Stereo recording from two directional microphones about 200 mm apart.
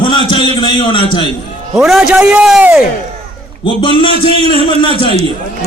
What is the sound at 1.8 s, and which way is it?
A man's voice, centre (ahead or behind).